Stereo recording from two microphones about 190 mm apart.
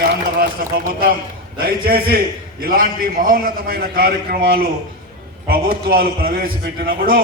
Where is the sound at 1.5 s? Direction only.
55° right (ahead or behind).